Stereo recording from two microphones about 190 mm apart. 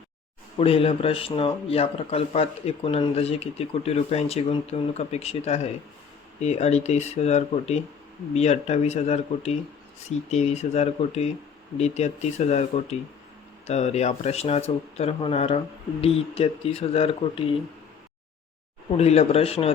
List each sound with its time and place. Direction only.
0.6 s speech: 30° left (ahead or behind)
18.9 s speech: 35° left (ahead or behind)